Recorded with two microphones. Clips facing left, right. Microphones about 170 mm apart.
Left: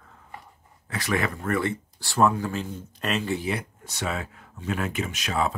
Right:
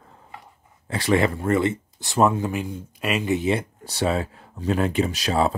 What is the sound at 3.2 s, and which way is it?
Speech, 20° right (ahead or behind).